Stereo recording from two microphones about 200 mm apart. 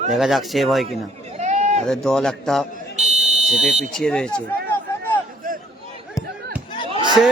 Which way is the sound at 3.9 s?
5° left (ahead or behind).